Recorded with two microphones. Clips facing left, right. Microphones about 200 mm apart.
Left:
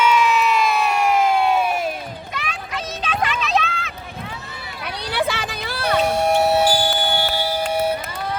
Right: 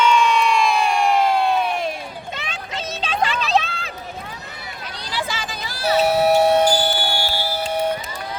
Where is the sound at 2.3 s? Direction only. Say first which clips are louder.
Left 3 dB; 25° right (ahead or behind).